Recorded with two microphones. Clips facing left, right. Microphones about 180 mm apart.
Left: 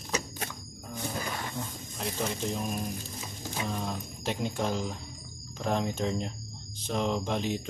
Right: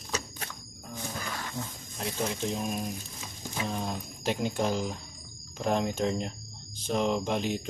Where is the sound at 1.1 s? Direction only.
15° left (ahead or behind).